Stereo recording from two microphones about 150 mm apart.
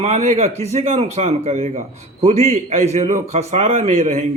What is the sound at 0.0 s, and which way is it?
Speech, 50° right (ahead or behind).